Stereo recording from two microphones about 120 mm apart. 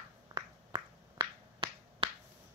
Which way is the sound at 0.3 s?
35° right (ahead or behind).